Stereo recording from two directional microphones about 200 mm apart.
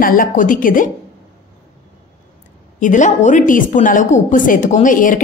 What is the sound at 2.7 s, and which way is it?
A woman's voice, 40° left (ahead or behind).